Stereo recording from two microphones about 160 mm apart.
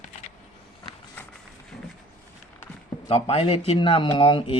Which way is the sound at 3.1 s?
35° left (ahead or behind).